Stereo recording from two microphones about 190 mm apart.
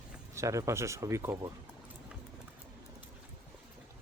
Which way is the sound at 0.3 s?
15° right (ahead or behind).